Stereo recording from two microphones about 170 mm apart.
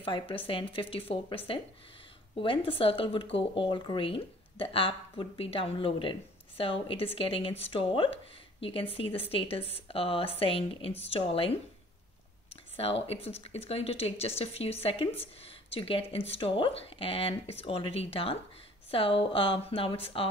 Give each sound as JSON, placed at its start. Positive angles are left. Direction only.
{"t": 0.0, "sound": "speech", "side_deg": 30}
{"t": 12.7, "sound": "speech", "side_deg": 35}